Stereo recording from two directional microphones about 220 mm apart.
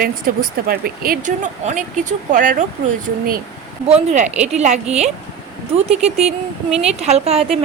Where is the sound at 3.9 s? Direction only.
30° right (ahead or behind).